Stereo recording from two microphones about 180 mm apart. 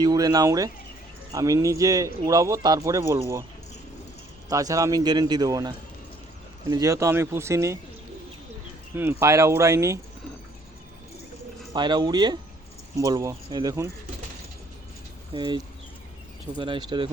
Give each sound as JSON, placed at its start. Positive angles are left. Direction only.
{"t": 0.0, "sound": "a man's voice", "side_deg": -20}
{"t": 4.4, "sound": "a man's voice", "side_deg": -20}
{"t": 9.2, "sound": "speech", "side_deg": -15}
{"t": 11.7, "sound": "a man's voice", "side_deg": -25}
{"t": 15.3, "sound": "a man's voice", "side_deg": -25}